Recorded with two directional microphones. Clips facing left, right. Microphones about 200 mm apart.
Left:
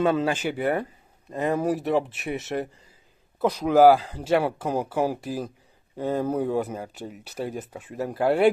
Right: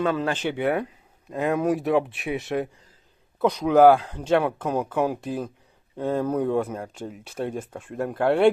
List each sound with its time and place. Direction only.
0.0 s speech: 20° left (ahead or behind)
0.3 s speech: 5° left (ahead or behind)